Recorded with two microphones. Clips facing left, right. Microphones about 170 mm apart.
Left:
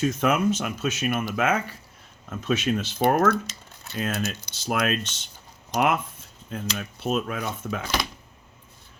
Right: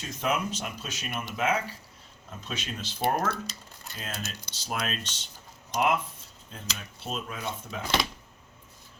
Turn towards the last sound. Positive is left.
turn(degrees=60)  # may be behind; listen again after turning